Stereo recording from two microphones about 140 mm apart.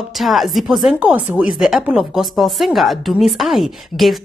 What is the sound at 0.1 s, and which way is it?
Speech, centre (ahead or behind).